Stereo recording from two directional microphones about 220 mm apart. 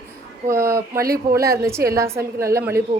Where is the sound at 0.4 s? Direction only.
10° right (ahead or behind).